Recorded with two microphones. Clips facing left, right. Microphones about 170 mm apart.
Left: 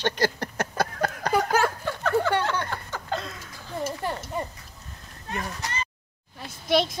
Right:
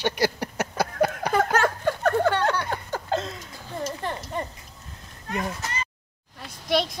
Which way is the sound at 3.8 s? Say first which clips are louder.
Left 1 dB; 5° left (ahead or behind).